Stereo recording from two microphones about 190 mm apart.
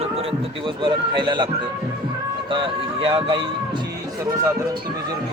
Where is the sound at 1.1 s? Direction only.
25° right (ahead or behind).